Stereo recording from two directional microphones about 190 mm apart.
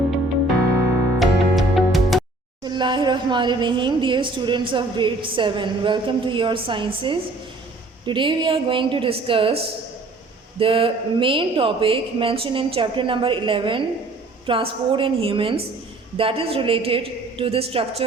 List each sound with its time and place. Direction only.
1.2 s music: centre (ahead or behind)
2.6 s a woman's voice: 25° right (ahead or behind)